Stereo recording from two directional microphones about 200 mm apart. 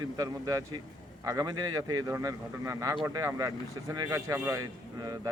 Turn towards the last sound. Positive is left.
turn(degrees=-20)  # may be behind; listen again after turning